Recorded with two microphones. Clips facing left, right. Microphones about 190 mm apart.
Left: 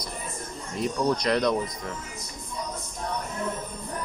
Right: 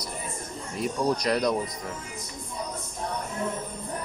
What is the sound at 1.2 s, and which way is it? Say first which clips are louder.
Speech: left 1 dB; 10° right (ahead or behind).